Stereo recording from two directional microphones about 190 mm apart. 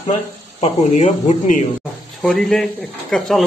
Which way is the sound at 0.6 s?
35° left (ahead or behind).